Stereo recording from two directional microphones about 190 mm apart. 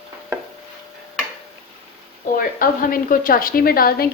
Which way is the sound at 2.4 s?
50° left (ahead or behind).